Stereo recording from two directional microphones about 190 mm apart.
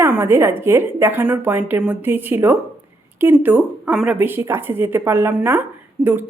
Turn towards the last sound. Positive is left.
turn(degrees=-10)  # may be behind; listen again after turning